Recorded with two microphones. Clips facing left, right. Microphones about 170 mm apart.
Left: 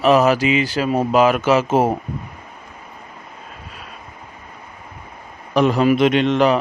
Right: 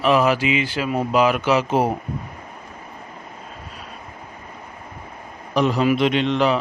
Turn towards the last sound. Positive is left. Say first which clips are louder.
# left 4 dB
turn(degrees=50)  # may be behind; listen again after turning